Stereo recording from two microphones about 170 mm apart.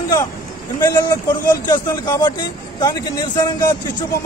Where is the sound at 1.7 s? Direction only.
25° left (ahead or behind).